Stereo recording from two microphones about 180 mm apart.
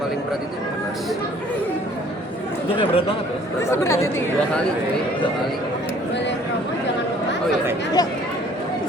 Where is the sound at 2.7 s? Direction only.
30° left (ahead or behind).